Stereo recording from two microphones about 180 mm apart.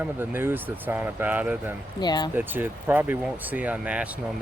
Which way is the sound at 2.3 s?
10° right (ahead or behind).